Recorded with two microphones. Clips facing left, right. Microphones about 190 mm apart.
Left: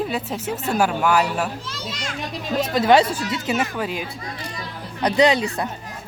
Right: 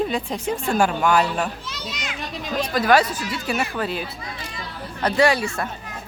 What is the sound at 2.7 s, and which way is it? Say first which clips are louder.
A woman's voice: left 2 dB; 25° left (ahead or behind).